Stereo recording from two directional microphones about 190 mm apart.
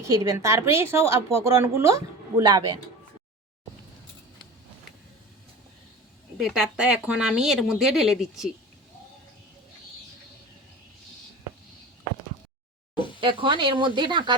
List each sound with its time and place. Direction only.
0.0 s a woman's voice: 15° right (ahead or behind)
6.3 s speech: 5° right (ahead or behind)
13.1 s speech: 25° right (ahead or behind)